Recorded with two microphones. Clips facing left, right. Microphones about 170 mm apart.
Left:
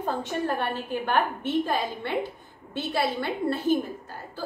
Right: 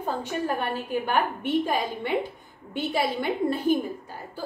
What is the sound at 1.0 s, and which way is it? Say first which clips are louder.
A woman's voice: left 2 dB; 10° right (ahead or behind).